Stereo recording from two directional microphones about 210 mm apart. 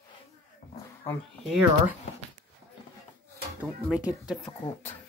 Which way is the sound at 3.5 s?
5° right (ahead or behind).